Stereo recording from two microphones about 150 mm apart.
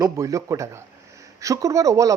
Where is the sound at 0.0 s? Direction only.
20° right (ahead or behind).